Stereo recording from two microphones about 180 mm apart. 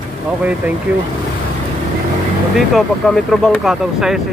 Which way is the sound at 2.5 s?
Centre (ahead or behind).